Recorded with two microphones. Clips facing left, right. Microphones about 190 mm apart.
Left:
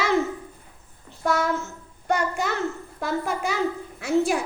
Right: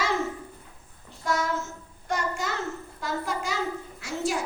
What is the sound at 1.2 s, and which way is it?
A child's voice, 60° left (ahead or behind).